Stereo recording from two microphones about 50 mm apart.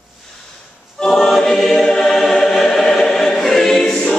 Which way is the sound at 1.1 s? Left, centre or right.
Centre.